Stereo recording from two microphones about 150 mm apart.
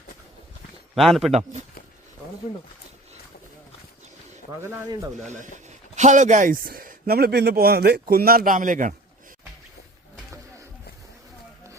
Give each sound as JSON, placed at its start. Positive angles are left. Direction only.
{"t": 0.9, "sound": "a man's voice", "side_deg": 0}
{"t": 1.3, "sound": "speech", "side_deg": -45}
{"t": 5.4, "sound": "speech", "side_deg": -55}